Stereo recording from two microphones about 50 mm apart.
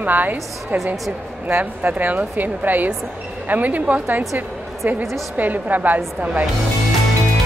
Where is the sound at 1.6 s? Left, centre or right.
Right.